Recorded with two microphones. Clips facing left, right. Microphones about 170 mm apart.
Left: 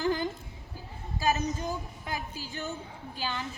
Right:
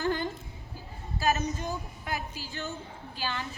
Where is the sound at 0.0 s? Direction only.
15° left (ahead or behind).